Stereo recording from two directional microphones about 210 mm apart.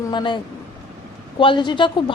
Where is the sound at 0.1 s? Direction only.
20° left (ahead or behind).